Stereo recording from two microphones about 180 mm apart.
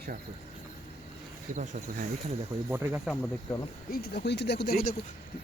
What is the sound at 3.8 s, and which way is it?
Speech, 60° left (ahead or behind).